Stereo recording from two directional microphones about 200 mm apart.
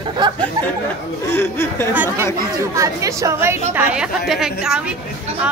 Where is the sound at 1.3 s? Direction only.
10° left (ahead or behind).